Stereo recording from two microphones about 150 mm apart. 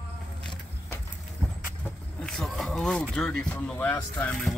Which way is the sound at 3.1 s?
5° left (ahead or behind).